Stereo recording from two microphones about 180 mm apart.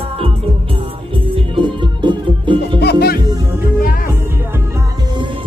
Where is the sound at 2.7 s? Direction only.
65° left (ahead or behind).